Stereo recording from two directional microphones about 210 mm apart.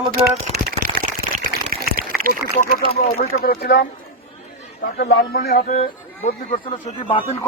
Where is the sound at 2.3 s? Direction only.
40° left (ahead or behind).